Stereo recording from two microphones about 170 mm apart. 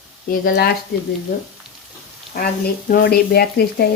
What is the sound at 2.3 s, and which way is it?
Speech, 60° left (ahead or behind).